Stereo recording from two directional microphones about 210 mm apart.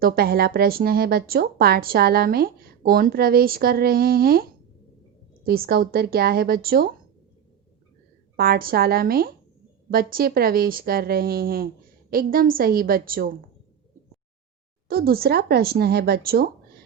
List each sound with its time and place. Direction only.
0.0 s speech: 45° right (ahead or behind)
5.5 s speech: 45° right (ahead or behind)
8.4 s speech: 45° right (ahead or behind)
14.8 s speech: 45° right (ahead or behind)